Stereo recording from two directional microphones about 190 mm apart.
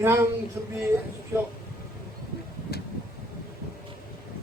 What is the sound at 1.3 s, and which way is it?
Speech, 15° right (ahead or behind).